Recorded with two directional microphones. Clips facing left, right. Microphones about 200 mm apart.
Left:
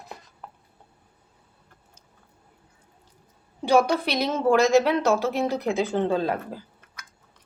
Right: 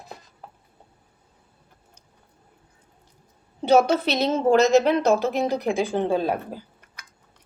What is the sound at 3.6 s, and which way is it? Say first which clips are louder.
A woman's voice: right 2 dB; 25° right (ahead or behind).